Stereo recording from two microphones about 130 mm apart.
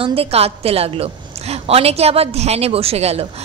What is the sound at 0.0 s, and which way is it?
A woman's voice, 50° right (ahead or behind).